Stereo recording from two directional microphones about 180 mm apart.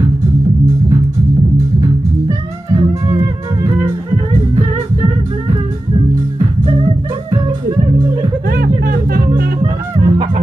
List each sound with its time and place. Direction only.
1.8 s music: 20° right (ahead or behind)
7.2 s music: 25° right (ahead or behind)
8.5 s music: 55° right (ahead or behind)
9.6 s music: 25° right (ahead or behind)